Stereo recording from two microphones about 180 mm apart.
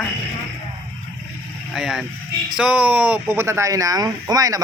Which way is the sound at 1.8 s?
Centre (ahead or behind).